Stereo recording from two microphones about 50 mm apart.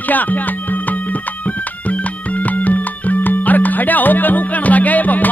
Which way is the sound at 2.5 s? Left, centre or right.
Left.